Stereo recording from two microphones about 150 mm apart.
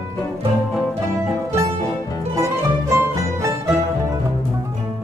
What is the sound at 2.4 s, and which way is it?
Music, 20° right (ahead or behind).